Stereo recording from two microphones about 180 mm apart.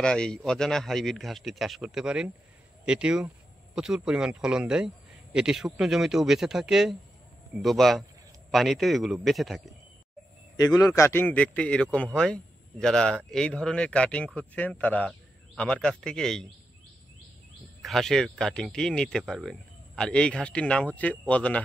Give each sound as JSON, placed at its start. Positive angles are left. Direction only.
{"t": 0.0, "sound": "a man's voice", "side_deg": 5}
{"t": 10.6, "sound": "a man's voice", "side_deg": 20}
{"t": 17.8, "sound": "a man's voice", "side_deg": 0}